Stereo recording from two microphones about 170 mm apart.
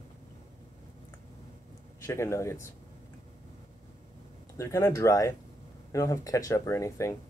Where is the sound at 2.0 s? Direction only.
15° left (ahead or behind).